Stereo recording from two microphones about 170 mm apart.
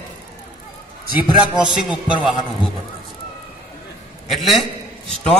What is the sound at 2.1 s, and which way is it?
Speech, 30° left (ahead or behind).